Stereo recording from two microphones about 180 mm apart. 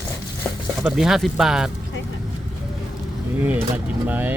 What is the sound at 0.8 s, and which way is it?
Speech, 5° right (ahead or behind).